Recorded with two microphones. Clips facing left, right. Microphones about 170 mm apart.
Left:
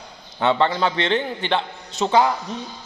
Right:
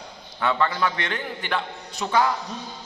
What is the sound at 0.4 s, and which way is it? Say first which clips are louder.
A man's voice: left 4 dB; 25° left (ahead or behind).